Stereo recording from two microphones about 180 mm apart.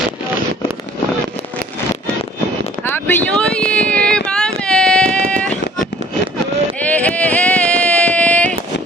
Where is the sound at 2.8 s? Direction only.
10° left (ahead or behind).